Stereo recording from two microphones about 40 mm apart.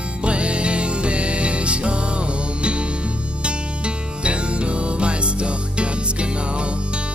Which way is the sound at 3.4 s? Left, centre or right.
Right.